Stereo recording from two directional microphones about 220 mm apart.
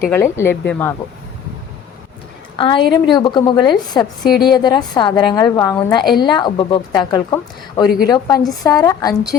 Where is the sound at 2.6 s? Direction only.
20° left (ahead or behind).